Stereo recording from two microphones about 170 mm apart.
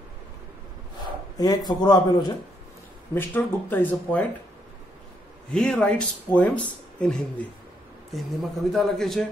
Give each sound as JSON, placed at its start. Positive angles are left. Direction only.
{"t": 1.4, "sound": "speech", "side_deg": 25}
{"t": 3.2, "sound": "speech", "side_deg": 10}
{"t": 5.5, "sound": "speech", "side_deg": 5}